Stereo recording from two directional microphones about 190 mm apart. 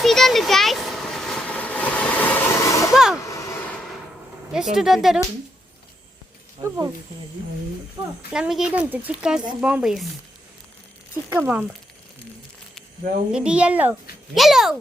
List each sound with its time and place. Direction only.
0.0 s train: centre (ahead or behind)
2.9 s vehicle: centre (ahead or behind)
3.2 s a sound: 15° left (ahead or behind)
4.5 s speech: centre (ahead or behind)
6.6 s a child's voice: 15° right (ahead or behind)
8.3 s speech: 5° right (ahead or behind)
11.3 s a child's voice: 10° right (ahead or behind)
13.3 s a child's voice: 5° right (ahead or behind)